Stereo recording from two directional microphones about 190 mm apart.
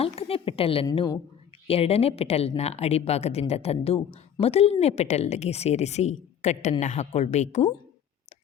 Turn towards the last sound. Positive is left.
turn(degrees=35)  # may be behind; listen again after turning